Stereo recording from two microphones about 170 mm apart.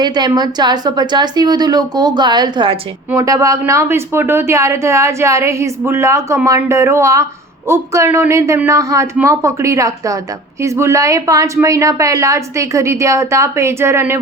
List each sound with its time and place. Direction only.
0.0 s a woman's voice: 25° right (ahead or behind)